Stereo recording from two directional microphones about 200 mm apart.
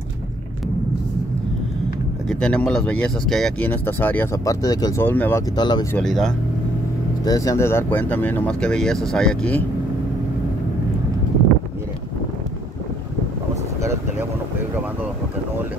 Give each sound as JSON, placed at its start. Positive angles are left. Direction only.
{"t": 2.2, "sound": "speech", "side_deg": 5}
{"t": 5.6, "sound": "speech", "side_deg": 20}
{"t": 5.9, "sound": "speech", "side_deg": 0}
{"t": 7.2, "sound": "speech", "side_deg": 15}